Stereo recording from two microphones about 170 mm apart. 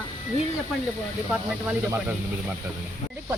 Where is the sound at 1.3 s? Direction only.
10° right (ahead or behind).